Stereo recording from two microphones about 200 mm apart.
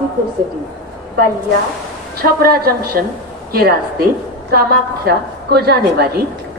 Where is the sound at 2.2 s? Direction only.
50° right (ahead or behind).